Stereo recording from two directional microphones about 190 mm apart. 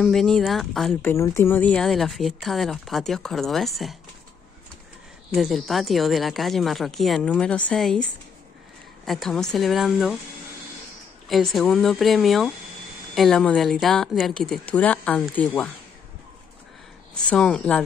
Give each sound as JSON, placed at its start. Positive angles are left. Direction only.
{"t": 0.0, "sound": "speech", "side_deg": 5}
{"t": 1.1, "sound": "speech", "side_deg": 15}
{"t": 5.3, "sound": "speech", "side_deg": 0}
{"t": 11.2, "sound": "speech", "side_deg": 0}
{"t": 17.3, "sound": "speech", "side_deg": 5}